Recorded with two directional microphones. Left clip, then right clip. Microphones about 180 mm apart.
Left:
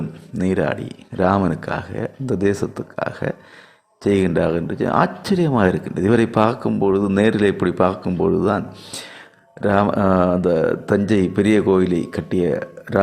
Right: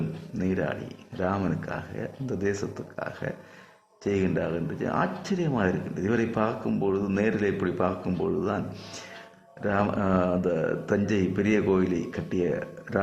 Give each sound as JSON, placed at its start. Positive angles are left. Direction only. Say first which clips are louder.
{"t": 0.3, "sound": "speech", "louder": "left 9 dB", "side_deg": 30}